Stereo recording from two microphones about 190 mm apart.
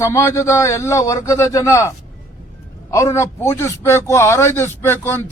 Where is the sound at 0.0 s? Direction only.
15° left (ahead or behind).